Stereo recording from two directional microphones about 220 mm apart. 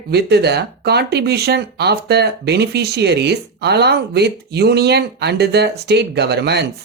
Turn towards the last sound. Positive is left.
turn(degrees=-50)  # may be behind; listen again after turning